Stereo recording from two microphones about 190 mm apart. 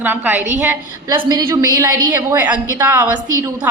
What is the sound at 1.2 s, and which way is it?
A woman's voice, 20° right (ahead or behind).